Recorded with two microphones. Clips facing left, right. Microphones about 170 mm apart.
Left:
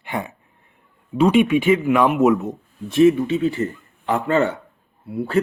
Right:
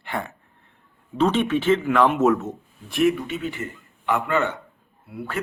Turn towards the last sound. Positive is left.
turn(degrees=30)  # may be behind; listen again after turning